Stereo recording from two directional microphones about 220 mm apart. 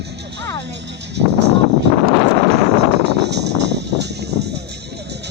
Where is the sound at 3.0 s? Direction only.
50° right (ahead or behind).